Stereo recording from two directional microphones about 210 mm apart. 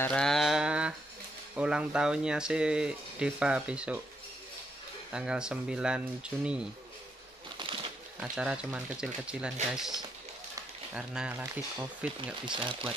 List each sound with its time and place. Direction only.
0.0 s a sound: 5° left (ahead or behind)
1.5 s speech: 5° right (ahead or behind)
5.1 s speech: 5° right (ahead or behind)
7.5 s a sound: 25° right (ahead or behind)
8.2 s speech: 5° right (ahead or behind)
12.2 s speech: 25° right (ahead or behind)